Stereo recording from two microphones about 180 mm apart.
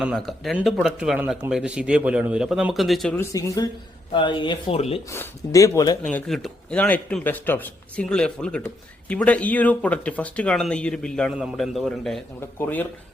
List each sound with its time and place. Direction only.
0.0 s a man's voice: centre (ahead or behind)
3.2 s speech: 15° left (ahead or behind); by 4.9 s 35° left (ahead or behind)
5.0 s a man's voice: 15° left (ahead or behind)
6.1 s a man's voice: 5° left (ahead or behind)